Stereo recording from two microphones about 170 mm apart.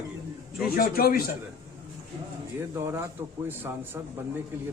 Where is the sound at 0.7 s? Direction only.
60° left (ahead or behind).